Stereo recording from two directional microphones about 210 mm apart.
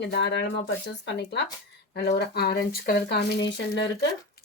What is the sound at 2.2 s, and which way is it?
Speech, 50° left (ahead or behind).